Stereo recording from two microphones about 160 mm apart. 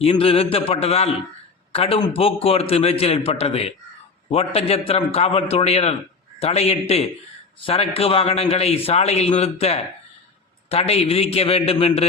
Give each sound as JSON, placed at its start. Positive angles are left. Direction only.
{"t": 0.0, "sound": "a man's voice", "side_deg": 35}